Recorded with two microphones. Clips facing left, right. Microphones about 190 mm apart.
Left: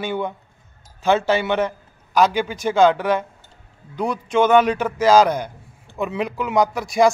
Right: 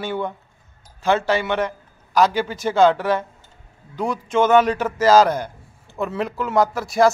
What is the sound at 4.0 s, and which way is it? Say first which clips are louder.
Speech: left 1 dB; centre (ahead or behind).